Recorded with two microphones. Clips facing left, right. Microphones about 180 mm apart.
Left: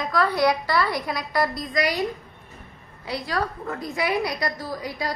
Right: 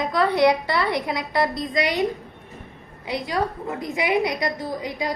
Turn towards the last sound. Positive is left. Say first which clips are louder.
# right 2 dB
turn(degrees=-20)  # may be behind; listen again after turning